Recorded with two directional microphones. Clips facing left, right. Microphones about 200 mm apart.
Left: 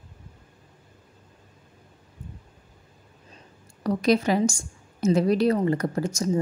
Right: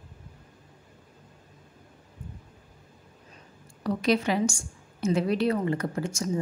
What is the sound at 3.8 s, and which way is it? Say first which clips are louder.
A woman's voice: left 3 dB; 40° left (ahead or behind).